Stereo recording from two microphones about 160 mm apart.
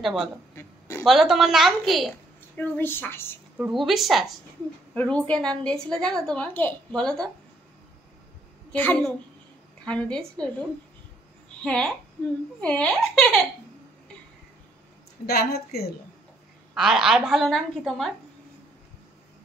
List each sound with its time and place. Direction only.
0.0 s a woman's voice: 5° right (ahead or behind)
0.6 s a sound: 15° left (ahead or behind)
1.0 s a woman's voice: centre (ahead or behind)
2.5 s speech: 10° left (ahead or behind)
3.5 s a woman's voice: 5° right (ahead or behind)
8.7 s speech: 10° left (ahead or behind)
11.6 s a woman's voice: 5° left (ahead or behind)
15.2 s a woman's voice: 80° left
16.7 s a woman's voice: 5° right (ahead or behind)